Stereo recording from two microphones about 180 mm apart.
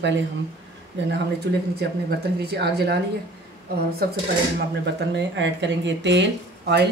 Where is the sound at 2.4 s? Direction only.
65° right (ahead or behind).